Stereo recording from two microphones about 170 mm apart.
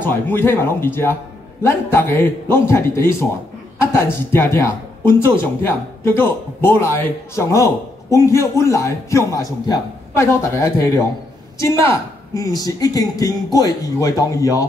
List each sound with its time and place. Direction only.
0.0 s speech: 10° left (ahead or behind)
6.1 s speech: 15° left (ahead or behind)